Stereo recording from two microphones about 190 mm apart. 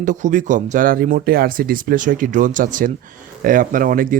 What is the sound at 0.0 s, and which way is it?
Speech, 40° right (ahead or behind).